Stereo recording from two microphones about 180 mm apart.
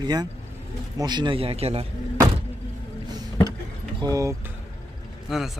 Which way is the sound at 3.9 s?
20° right (ahead or behind).